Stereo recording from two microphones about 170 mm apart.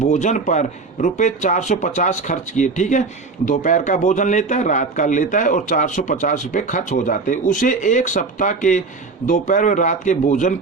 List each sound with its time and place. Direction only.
0.0 s a man's voice: 45° left (ahead or behind)